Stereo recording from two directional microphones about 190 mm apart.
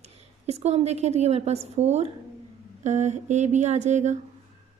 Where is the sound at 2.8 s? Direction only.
40° right (ahead or behind).